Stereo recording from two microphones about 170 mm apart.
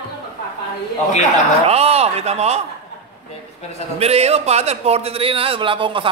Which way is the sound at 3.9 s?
40° right (ahead or behind).